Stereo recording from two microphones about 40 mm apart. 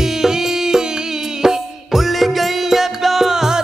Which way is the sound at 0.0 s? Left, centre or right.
Centre.